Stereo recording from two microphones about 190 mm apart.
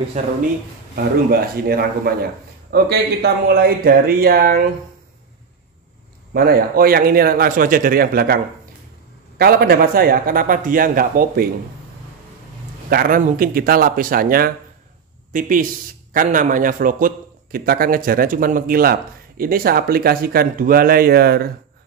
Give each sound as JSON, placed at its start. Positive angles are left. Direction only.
{"t": 0.2, "sound": "speech", "side_deg": -40}
{"t": 0.9, "sound": "a man's voice", "side_deg": -50}
{"t": 6.3, "sound": "a man's voice", "side_deg": -50}
{"t": 9.4, "sound": "a man's voice", "side_deg": -55}
{"t": 12.9, "sound": "a man's voice", "side_deg": -50}